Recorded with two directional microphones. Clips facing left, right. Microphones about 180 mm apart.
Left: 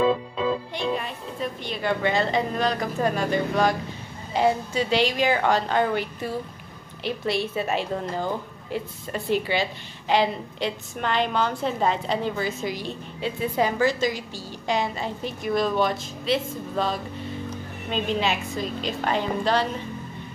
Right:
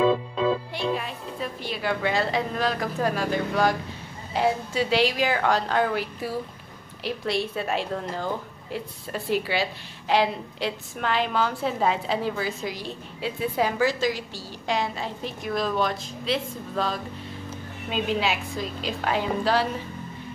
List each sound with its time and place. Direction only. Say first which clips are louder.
0.7 s a woman's voice: even; centre (ahead or behind)